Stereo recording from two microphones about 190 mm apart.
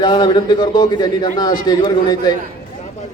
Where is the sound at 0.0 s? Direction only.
25° left (ahead or behind).